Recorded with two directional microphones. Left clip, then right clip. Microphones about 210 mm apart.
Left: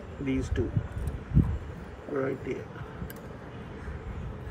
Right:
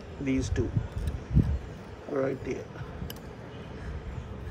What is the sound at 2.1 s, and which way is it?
Speech, 5° right (ahead or behind).